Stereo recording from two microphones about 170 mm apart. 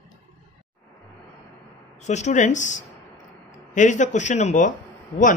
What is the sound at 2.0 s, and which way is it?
Speech, 45° left (ahead or behind).